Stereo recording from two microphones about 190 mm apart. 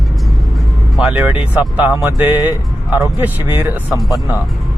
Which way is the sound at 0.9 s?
5° right (ahead or behind).